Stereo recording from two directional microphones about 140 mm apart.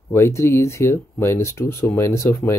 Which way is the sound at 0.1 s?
20° left (ahead or behind).